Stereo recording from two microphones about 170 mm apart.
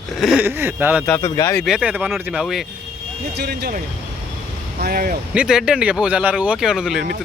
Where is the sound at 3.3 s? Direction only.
70° right (ahead or behind).